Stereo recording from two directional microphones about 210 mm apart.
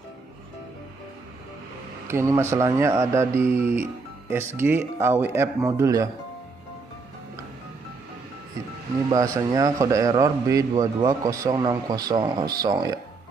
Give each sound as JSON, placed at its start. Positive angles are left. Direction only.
{"t": 2.0, "sound": "a man's voice", "side_deg": -10}
{"t": 9.1, "sound": "a man's voice", "side_deg": -15}